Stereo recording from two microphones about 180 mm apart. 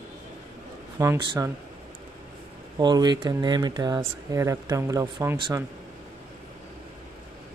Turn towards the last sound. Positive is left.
turn(degrees=-15)  # may be behind; listen again after turning